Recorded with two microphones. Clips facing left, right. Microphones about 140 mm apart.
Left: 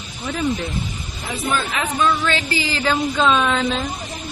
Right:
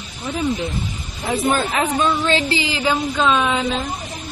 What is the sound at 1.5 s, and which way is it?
Speech, 35° right (ahead or behind).